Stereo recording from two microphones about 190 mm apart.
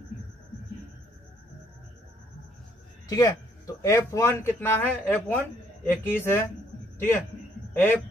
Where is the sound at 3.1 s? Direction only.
20° left (ahead or behind).